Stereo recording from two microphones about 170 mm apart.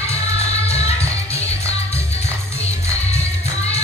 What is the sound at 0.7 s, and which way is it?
Music, 40° left (ahead or behind).